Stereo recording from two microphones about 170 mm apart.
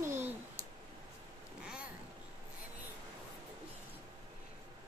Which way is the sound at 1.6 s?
5° right (ahead or behind).